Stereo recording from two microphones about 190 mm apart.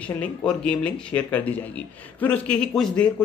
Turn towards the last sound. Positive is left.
turn(degrees=5)  # may be behind; listen again after turning